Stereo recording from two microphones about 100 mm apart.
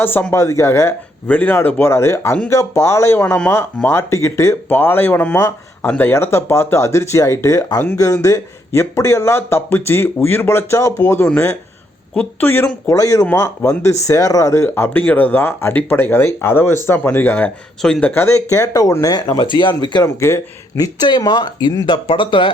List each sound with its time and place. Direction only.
0.0 s speech: 20° left (ahead or behind)
1.3 s speech: 15° left (ahead or behind)
12.1 s speech: 15° left (ahead or behind)
12.9 s speech: 35° left (ahead or behind)
14.9 s speech: 15° left (ahead or behind)
18.1 s speech: 25° left (ahead or behind); by 20.1 s 50° left (ahead or behind)
20.1 s speech: 30° left (ahead or behind); by 22.5 s 55° left (ahead or behind)